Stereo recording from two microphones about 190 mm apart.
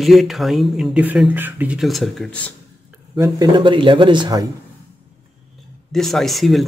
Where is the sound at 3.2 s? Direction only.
25° right (ahead or behind).